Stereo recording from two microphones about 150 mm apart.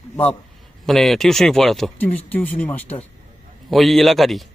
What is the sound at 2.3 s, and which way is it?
Speech, 10° left (ahead or behind).